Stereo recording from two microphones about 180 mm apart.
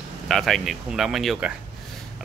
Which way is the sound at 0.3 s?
Centre (ahead or behind).